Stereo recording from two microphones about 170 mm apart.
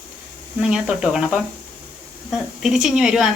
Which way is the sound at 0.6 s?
5° right (ahead or behind).